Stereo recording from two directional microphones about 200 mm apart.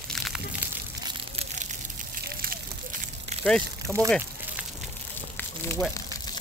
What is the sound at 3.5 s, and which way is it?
Speech, 5° left (ahead or behind).